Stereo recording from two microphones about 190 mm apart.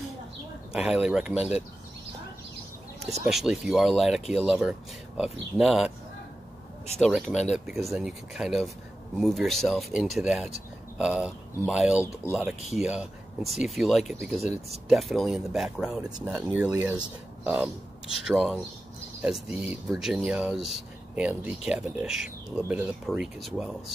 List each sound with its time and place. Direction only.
1.0 s speech: 5° right (ahead or behind)
3.3 s speech: centre (ahead or behind)
7.0 s speech: centre (ahead or behind)